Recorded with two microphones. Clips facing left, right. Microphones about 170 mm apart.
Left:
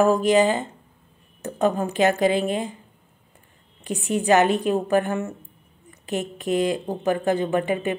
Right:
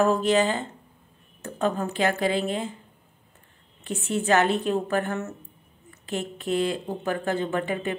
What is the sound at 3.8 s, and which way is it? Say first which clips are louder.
A woman's voice: left 4 dB; 15° left (ahead or behind).